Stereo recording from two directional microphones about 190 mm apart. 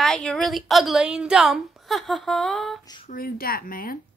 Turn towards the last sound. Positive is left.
turn(degrees=50)  # may be behind; listen again after turning